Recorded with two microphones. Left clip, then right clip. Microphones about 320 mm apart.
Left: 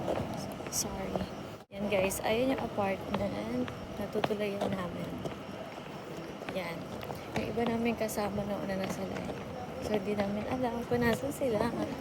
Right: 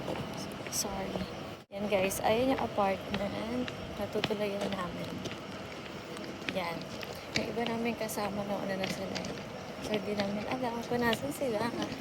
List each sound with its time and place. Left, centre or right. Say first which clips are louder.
1.9 s a woman's voice: right 1 dB; centre
4.2 s a woman's voice: left 1 dB; centre
7.3 s speech: even; centre
9.9 s speech: left 1 dB; centre